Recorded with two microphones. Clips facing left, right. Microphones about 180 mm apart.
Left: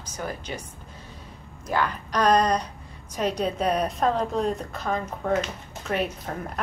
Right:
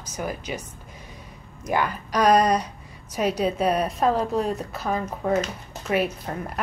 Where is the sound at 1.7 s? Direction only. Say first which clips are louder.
Right 1 dB; 10° right (ahead or behind).